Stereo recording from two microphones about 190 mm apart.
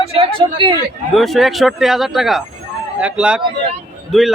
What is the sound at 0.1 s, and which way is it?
Speech, 30° right (ahead or behind).